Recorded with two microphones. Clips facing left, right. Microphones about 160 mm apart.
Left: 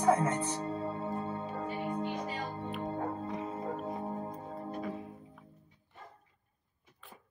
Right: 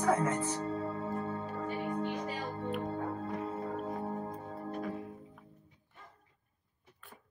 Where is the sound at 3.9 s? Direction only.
20° left (ahead or behind).